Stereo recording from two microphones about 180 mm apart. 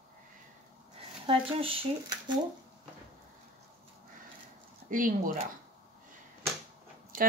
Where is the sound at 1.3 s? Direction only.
30° right (ahead or behind).